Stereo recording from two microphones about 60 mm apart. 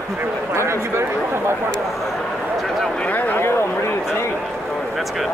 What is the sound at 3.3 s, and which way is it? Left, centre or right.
Speech, left.